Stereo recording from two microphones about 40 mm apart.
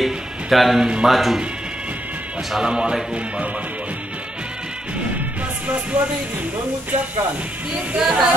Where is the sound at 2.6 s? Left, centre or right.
Right.